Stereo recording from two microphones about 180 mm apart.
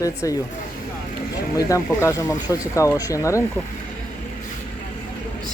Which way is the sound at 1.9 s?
15° left (ahead or behind).